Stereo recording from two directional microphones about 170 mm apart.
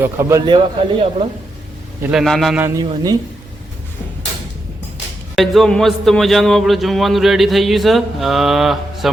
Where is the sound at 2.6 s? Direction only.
20° right (ahead or behind).